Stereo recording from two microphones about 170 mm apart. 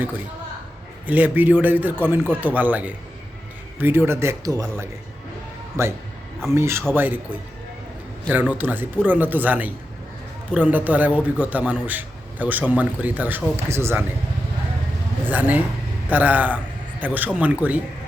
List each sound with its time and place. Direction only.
1.0 s a man's voice: 10° right (ahead or behind)
15.2 s a man's voice: 10° right (ahead or behind)